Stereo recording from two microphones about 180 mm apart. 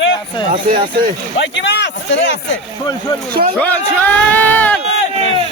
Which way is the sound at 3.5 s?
10° left (ahead or behind).